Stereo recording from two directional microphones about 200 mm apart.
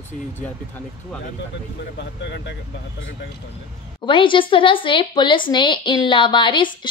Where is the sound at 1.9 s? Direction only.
60° left (ahead or behind).